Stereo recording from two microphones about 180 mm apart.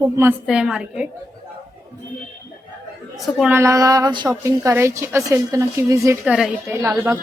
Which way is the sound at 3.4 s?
10° right (ahead or behind).